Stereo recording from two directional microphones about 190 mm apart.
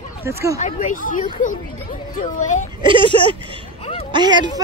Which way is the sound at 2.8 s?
25° right (ahead or behind).